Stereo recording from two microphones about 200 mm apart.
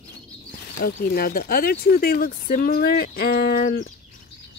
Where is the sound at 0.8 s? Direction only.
50° left (ahead or behind).